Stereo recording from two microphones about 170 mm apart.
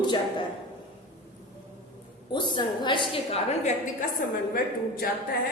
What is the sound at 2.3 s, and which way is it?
A woman's voice, 25° left (ahead or behind).